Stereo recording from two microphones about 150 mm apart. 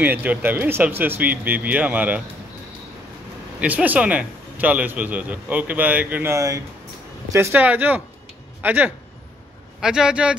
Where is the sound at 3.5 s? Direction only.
10° right (ahead or behind).